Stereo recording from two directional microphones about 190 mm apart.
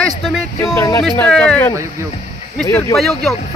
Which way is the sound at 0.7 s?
15° left (ahead or behind).